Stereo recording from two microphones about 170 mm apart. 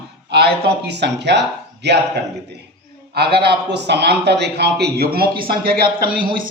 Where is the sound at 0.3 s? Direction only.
70° right (ahead or behind).